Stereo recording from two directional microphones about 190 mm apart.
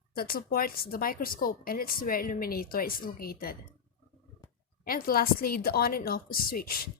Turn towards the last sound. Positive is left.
turn(degrees=50)  # may be behind; listen again after turning